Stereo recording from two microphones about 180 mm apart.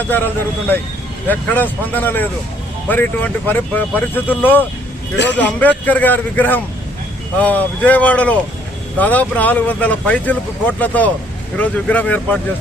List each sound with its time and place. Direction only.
0.0 s speech: 10° left (ahead or behind)
1.3 s speech: 10° left (ahead or behind)
5.1 s a man's voice: 80° left
5.4 s speech: 10° left (ahead or behind)